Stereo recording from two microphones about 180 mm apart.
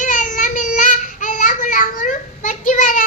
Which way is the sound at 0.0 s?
45° left (ahead or behind).